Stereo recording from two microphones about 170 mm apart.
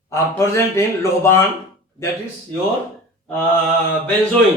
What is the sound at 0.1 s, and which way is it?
A man's voice, 15° left (ahead or behind).